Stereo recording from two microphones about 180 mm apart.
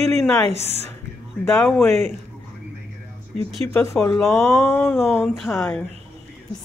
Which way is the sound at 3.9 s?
Centre (ahead or behind).